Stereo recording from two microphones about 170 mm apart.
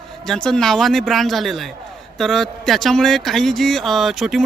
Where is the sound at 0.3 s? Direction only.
5° left (ahead or behind).